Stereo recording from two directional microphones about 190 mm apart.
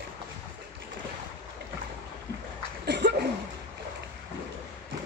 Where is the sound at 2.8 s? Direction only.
65° right (ahead or behind).